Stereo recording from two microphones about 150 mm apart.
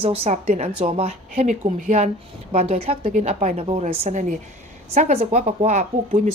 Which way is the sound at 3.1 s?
50° right (ahead or behind).